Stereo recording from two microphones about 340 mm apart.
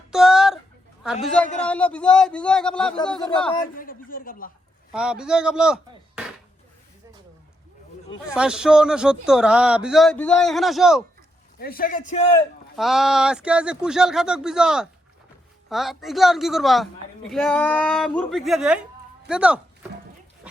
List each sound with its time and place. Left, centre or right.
0.1 s a sound: centre
1.2 s a man's voice: centre
3.5 s a man's voice: left
4.9 s a man's voice: centre
8.3 s a man's voice: centre
11.6 s a man's voice: left
12.7 s a man's voice: centre